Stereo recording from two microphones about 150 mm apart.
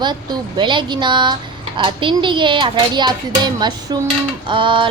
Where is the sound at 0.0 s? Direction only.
30° right (ahead or behind).